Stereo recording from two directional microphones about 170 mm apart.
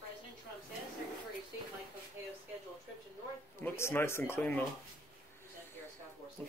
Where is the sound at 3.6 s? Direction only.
15° left (ahead or behind).